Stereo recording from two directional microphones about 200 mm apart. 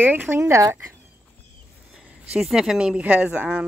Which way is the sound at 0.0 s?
10° right (ahead or behind).